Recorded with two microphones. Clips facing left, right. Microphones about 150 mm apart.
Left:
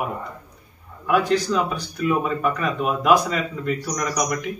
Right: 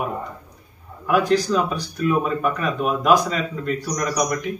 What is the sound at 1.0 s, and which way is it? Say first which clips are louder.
Speech: right 1 dB; centre (ahead or behind).